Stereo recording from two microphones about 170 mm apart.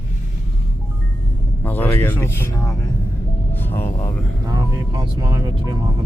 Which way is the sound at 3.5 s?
10° left (ahead or behind).